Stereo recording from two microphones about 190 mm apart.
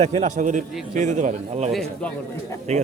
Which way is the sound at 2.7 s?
35° right (ahead or behind).